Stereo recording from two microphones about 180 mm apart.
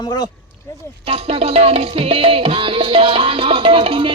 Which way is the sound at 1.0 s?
35° right (ahead or behind).